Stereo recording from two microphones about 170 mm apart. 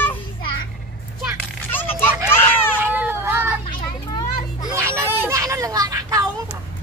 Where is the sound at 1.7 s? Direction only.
10° left (ahead or behind).